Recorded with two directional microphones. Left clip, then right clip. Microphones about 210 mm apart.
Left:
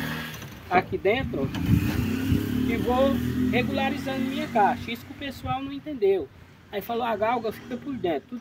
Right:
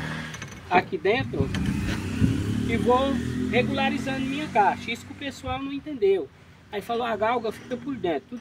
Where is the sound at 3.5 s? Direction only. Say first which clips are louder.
Right 4 dB; 10° left (ahead or behind).